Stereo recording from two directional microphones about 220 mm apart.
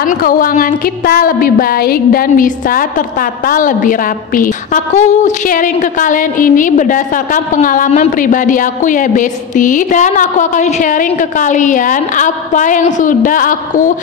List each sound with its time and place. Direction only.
0.2 s a woman's voice: 40° left (ahead or behind)